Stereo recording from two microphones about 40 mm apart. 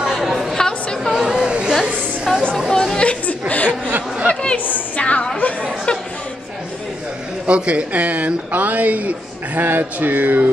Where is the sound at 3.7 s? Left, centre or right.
Right.